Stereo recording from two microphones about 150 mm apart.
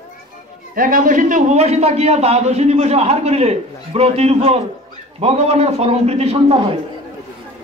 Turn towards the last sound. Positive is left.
turn(degrees=-40)  # may be behind; listen again after turning